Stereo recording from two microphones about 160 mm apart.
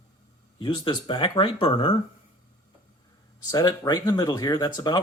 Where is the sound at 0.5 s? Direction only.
30° left (ahead or behind).